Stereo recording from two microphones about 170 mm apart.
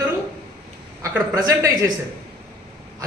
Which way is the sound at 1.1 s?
20° right (ahead or behind).